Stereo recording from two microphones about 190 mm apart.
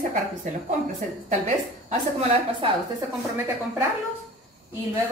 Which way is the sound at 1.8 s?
35° right (ahead or behind).